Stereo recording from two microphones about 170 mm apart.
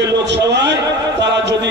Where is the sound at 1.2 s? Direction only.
90° right.